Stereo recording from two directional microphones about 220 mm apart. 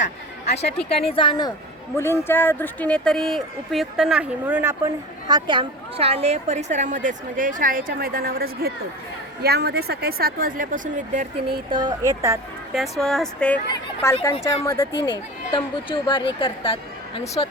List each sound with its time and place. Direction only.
0.4 s speech: 50° left (ahead or behind)
1.0 s speech: 25° left (ahead or behind); by 4.8 s 10° right (ahead or behind)
5.3 s a woman's voice: 20° right (ahead or behind)
11.7 s speech: 20° right (ahead or behind)
12.8 s speech: centre (ahead or behind); by 17.5 s 25° left (ahead or behind)